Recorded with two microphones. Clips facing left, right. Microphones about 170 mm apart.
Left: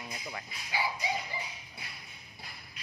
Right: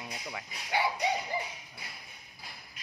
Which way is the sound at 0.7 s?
60° right (ahead or behind).